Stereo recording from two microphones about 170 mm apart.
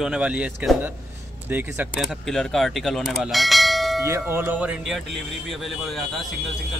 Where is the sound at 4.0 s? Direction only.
15° right (ahead or behind); by 6.5 s centre (ahead or behind).